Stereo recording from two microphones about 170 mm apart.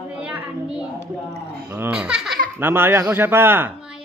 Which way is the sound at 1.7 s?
10° right (ahead or behind).